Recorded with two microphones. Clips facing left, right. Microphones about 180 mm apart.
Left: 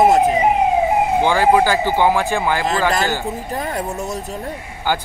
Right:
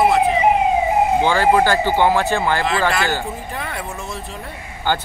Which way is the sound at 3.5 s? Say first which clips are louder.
Left 5 dB; 40° left (ahead or behind).